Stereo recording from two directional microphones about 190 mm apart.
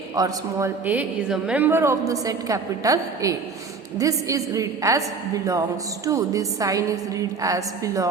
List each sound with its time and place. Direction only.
0.2 s a woman's voice: 10° right (ahead or behind)